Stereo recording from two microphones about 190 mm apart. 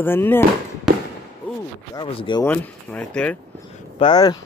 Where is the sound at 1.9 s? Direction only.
25° left (ahead or behind).